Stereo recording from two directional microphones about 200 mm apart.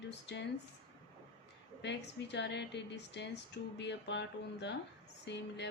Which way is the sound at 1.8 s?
60° left (ahead or behind).